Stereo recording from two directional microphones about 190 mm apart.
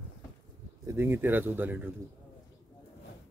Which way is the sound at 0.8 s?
15° right (ahead or behind).